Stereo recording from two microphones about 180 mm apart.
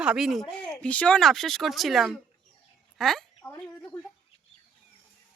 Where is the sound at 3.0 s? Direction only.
Centre (ahead or behind).